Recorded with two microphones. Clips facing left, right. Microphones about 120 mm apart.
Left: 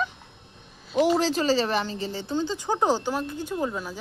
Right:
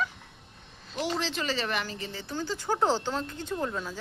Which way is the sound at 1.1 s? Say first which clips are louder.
Left 9 dB; 40° left (ahead or behind).